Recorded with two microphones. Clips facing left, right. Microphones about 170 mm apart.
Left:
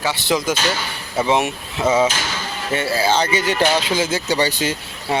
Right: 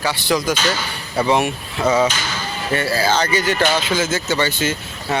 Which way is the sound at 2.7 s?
25° left (ahead or behind).